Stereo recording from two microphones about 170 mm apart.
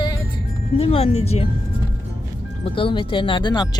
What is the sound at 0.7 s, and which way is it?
Speech, 35° left (ahead or behind).